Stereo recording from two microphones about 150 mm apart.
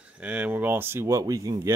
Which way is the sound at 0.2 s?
10° right (ahead or behind).